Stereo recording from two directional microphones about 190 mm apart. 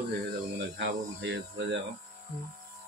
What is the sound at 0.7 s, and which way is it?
Speech, 65° right (ahead or behind).